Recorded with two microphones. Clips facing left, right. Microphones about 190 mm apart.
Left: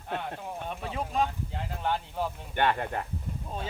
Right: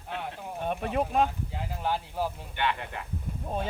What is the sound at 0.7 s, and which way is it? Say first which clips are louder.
Speech: right 9 dB; 55° right (ahead or behind).